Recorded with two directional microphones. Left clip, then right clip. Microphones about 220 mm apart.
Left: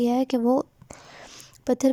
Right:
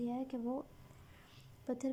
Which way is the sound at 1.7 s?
45° left (ahead or behind).